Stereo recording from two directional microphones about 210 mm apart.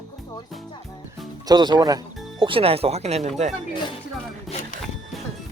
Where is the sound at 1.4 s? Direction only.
20° right (ahead or behind).